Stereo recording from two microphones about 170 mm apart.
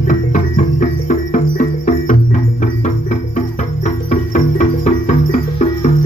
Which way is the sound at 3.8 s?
45° left (ahead or behind).